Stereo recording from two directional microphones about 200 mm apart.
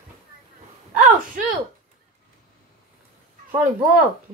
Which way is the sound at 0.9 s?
40° right (ahead or behind).